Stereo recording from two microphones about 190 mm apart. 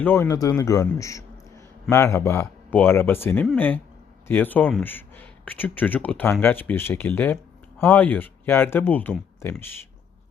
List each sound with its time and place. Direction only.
0.0 s speech: 10° left (ahead or behind)